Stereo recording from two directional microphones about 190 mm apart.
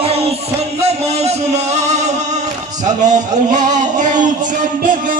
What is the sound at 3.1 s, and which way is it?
Music, 40° right (ahead or behind).